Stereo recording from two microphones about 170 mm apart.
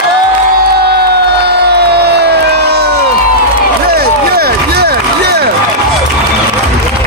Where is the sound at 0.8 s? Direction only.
70° right (ahead or behind).